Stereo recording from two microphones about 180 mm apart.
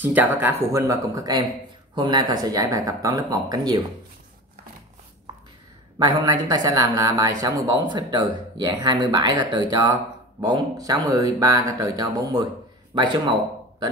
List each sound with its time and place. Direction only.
0.0 s speech: 10° right (ahead or behind)
5.9 s speech: 20° right (ahead or behind)